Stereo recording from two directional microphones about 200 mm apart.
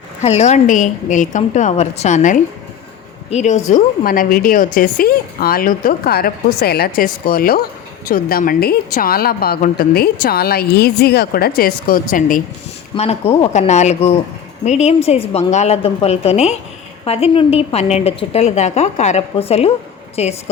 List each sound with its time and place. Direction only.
0.2 s a woman's voice: 35° left (ahead or behind)
12.9 s a woman's voice: 30° left (ahead or behind)